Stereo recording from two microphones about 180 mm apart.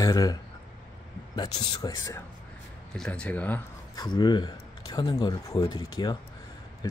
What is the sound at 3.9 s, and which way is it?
Speech, 25° left (ahead or behind).